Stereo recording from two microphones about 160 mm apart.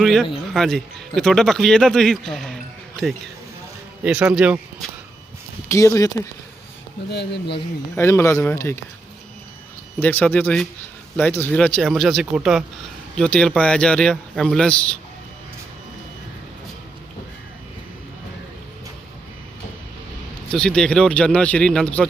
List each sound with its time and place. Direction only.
0.0 s a man's voice: centre (ahead or behind)
5.6 s speech: 20° left (ahead or behind)
7.1 s speech: 90° left
7.9 s speech: 15° left (ahead or behind)
10.0 s a man's voice: 10° left (ahead or behind)
20.5 s a man's voice: 5° left (ahead or behind)